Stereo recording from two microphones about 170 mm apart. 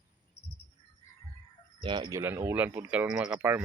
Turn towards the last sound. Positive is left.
turn(degrees=-10)  # may be behind; listen again after turning